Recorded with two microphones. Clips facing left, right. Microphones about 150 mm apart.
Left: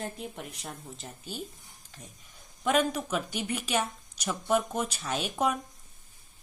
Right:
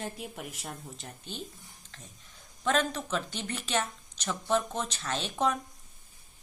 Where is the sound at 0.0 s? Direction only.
Centre (ahead or behind).